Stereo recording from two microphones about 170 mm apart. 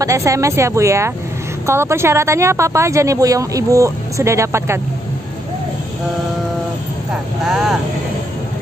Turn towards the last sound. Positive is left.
turn(degrees=-5)  # may be behind; listen again after turning